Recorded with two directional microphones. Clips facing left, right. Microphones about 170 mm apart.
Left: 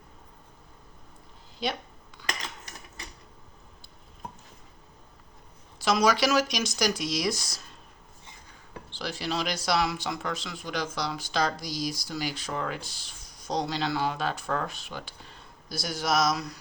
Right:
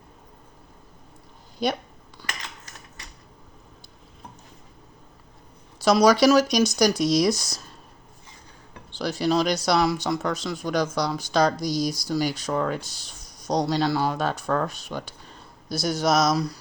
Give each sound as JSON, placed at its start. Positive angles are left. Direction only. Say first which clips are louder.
{"t": 5.8, "sound": "speech", "louder": "right 7 dB", "side_deg": -40}
{"t": 9.0, "sound": "speech", "louder": "right 9 dB", "side_deg": -40}